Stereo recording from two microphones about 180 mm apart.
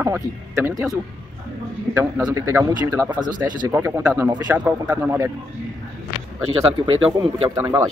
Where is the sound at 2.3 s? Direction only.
20° right (ahead or behind).